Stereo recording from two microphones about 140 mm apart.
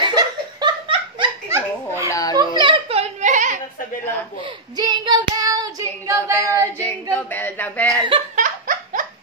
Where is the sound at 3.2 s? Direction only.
60° right (ahead or behind).